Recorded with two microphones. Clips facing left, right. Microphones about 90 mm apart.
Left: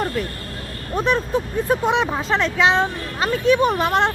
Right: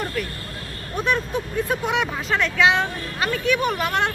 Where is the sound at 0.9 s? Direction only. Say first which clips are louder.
Left 3 dB; 30° left (ahead or behind).